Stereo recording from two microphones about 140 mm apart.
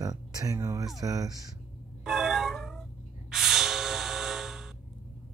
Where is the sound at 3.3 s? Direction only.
Centre (ahead or behind).